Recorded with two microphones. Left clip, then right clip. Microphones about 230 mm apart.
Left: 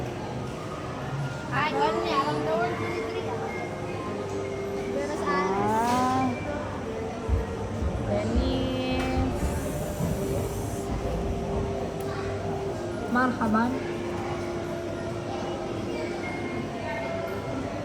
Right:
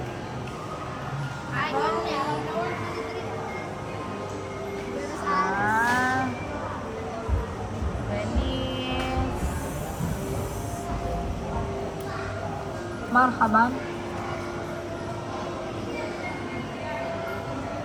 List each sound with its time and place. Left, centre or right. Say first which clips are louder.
1.5 s a sound: left 1 dB; centre
5.3 s vehicle: right 3 dB; right
5.8 s vehicle: right 2 dB; right
8.4 s music: left 1 dB; centre
13.1 s speech: right 6 dB; right